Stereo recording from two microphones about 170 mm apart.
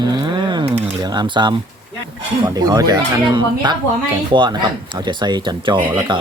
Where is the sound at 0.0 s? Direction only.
25° right (ahead or behind).